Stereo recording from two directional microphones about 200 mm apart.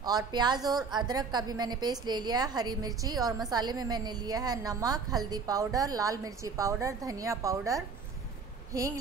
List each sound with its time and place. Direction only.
0.0 s a woman's voice: 20° right (ahead or behind)